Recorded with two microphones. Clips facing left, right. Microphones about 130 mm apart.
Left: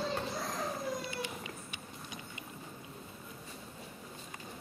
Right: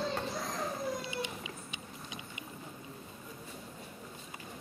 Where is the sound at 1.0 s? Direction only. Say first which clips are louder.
Right 1 dB; 20° right (ahead or behind).